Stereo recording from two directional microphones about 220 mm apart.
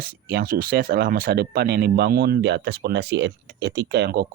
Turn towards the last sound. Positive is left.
turn(degrees=-50)  # may be behind; listen again after turning